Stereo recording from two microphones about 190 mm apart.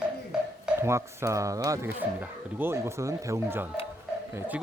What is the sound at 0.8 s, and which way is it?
Speech, 15° right (ahead or behind).